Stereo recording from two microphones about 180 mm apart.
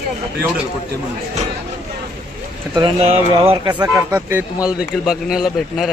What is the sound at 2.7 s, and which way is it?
Speech, 30° right (ahead or behind).